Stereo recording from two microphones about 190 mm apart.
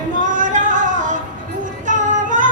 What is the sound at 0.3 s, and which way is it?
Music, 40° right (ahead or behind).